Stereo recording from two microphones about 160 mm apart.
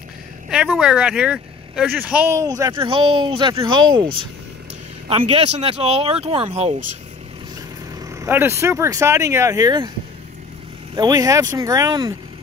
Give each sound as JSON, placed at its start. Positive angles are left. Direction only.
{"t": 0.5, "sound": "speech", "side_deg": -5}
{"t": 2.3, "sound": "speech", "side_deg": -20}
{"t": 2.8, "sound": "speech", "side_deg": -35}
{"t": 8.1, "sound": "speech", "side_deg": -15}
{"t": 11.0, "sound": "speech", "side_deg": -25}